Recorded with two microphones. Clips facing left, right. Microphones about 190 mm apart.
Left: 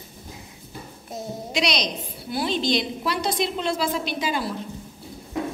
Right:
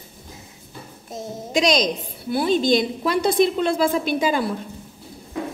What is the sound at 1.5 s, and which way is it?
A woman's voice, 45° right (ahead or behind).